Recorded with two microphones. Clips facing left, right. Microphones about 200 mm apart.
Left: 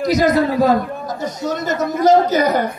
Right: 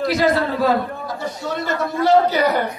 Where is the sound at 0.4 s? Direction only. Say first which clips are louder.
Left 4 dB; 45° left (ahead or behind).